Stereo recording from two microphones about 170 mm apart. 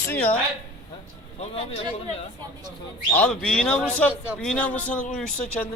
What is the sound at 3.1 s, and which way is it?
Speech, 5° left (ahead or behind).